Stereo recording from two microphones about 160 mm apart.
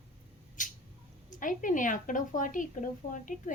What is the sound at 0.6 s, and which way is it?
Rodents, 55° left (ahead or behind).